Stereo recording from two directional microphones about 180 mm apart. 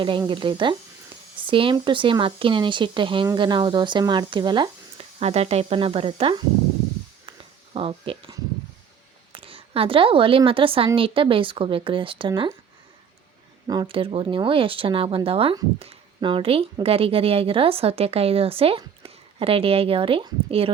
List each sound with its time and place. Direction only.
0.0 s speech: 25° right (ahead or behind)
7.3 s a sound: 30° right (ahead or behind)
9.3 s speech: 30° right (ahead or behind)
13.7 s a woman's voice: 25° right (ahead or behind)